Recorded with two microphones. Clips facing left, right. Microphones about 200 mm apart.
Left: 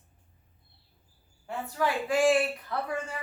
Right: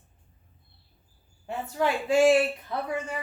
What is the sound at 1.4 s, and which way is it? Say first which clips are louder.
A woman's voice: right 2 dB; 25° right (ahead or behind).